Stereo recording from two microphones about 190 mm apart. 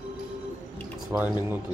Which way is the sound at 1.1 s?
10° right (ahead or behind).